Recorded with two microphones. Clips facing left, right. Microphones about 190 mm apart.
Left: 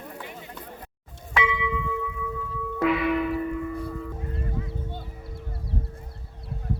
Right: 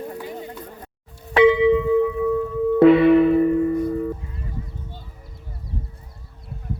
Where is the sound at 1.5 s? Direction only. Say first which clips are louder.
Right 15 dB; 35° right (ahead or behind).